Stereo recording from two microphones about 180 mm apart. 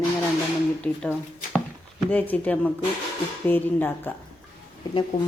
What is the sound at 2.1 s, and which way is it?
Speech, 10° left (ahead or behind).